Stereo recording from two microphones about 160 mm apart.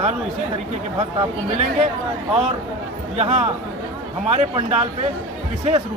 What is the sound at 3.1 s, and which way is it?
Speech, 45° right (ahead or behind).